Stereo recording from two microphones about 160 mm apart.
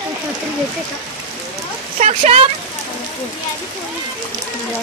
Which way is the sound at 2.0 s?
45° right (ahead or behind).